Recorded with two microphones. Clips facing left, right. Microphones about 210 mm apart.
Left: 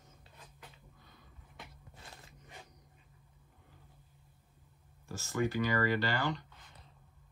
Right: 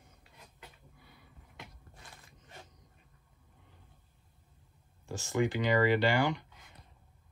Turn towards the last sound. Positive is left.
turn(degrees=-15)  # may be behind; listen again after turning